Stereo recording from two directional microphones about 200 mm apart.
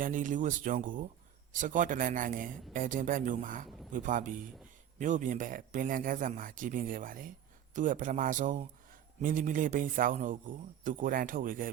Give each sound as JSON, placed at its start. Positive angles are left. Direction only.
{"t": 0.0, "sound": "speech", "side_deg": -40}